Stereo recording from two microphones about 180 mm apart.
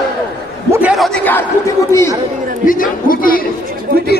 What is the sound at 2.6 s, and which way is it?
Speech, 50° left (ahead or behind).